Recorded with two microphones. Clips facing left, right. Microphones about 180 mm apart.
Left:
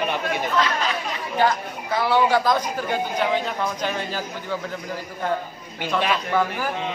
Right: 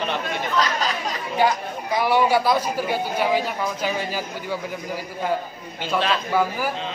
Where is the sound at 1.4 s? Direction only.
10° right (ahead or behind).